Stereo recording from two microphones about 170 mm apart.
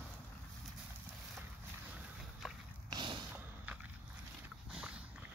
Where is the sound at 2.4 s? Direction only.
Centre (ahead or behind).